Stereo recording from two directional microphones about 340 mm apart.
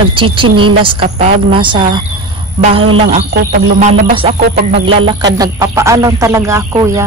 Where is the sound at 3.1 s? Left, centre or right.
Right.